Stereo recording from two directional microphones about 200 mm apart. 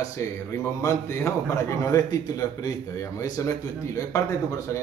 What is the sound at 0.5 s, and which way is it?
A man's voice, 15° left (ahead or behind).